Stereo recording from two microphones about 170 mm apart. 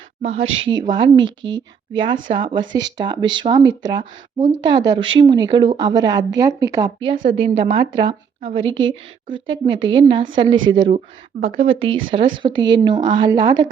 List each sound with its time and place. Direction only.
0.6 s speech: 25° right (ahead or behind)
1.2 s speech: 90° right
1.5 s a woman's voice: 30° right (ahead or behind)